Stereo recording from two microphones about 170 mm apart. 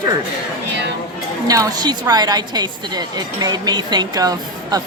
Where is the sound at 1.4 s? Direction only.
20° right (ahead or behind).